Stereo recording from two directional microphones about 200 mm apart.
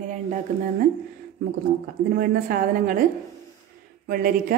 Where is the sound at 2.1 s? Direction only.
45° right (ahead or behind).